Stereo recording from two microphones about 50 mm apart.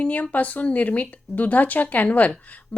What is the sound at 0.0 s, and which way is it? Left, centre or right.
A woman's voice, left.